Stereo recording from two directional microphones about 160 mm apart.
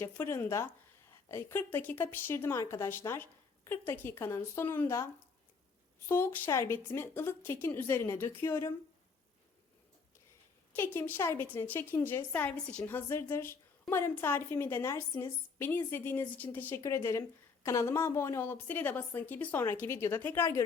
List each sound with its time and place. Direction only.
0.0 s a woman's voice: 15° left (ahead or behind)
6.1 s a woman's voice: 15° left (ahead or behind)
10.8 s a woman's voice: 15° left (ahead or behind)